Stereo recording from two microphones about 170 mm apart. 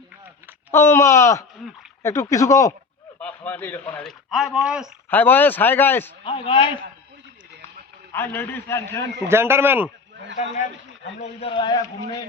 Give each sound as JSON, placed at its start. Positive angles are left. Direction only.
{"t": 0.7, "sound": "a man's voice", "side_deg": 15}
{"t": 5.1, "sound": "a man's voice", "side_deg": 10}
{"t": 6.2, "sound": "a man's voice", "side_deg": 30}
{"t": 8.1, "sound": "a man's voice", "side_deg": 15}
{"t": 9.3, "sound": "speech", "side_deg": -15}
{"t": 10.4, "sound": "a man's voice", "side_deg": 40}